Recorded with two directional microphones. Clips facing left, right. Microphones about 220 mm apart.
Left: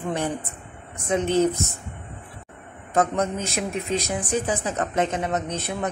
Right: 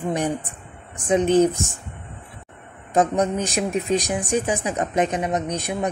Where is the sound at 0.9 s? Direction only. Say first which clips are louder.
Right 4 dB; 15° right (ahead or behind).